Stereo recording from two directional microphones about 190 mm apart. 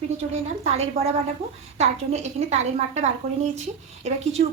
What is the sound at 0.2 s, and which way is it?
A woman's voice, 35° right (ahead or behind).